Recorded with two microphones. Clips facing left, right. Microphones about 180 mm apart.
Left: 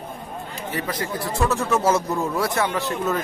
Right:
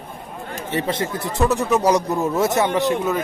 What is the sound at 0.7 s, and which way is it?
Speech, 25° right (ahead or behind).